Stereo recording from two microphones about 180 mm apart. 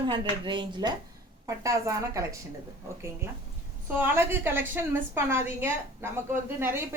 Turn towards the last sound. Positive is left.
turn(degrees=-15)  # may be behind; listen again after turning